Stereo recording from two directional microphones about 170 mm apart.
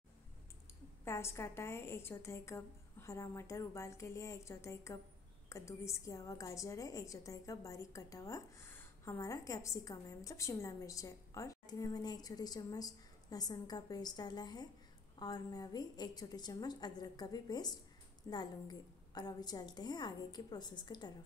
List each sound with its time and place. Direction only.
1.0 s a woman's voice: 15° left (ahead or behind)